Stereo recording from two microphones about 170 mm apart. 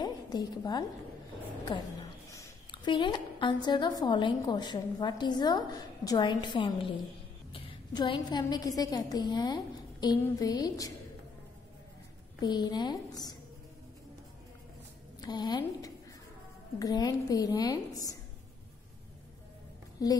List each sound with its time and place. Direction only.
0.0 s a woman's voice: 25° left (ahead or behind)
1.7 s a sound: 20° left (ahead or behind)
3.6 s a woman's voice: 25° left (ahead or behind)
12.4 s a woman's voice: 25° left (ahead or behind)
15.1 s a woman's voice: 25° left (ahead or behind)
20.0 s a woman's voice: 20° left (ahead or behind)